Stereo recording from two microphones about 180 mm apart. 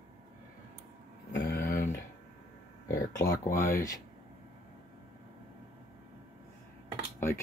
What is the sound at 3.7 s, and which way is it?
Speech, 15° left (ahead or behind).